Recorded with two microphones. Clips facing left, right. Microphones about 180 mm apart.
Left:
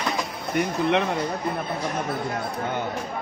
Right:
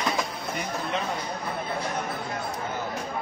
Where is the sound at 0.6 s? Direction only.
70° left (ahead or behind).